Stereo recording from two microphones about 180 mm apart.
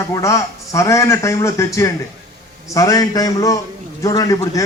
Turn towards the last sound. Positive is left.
turn(degrees=20)  # may be behind; listen again after turning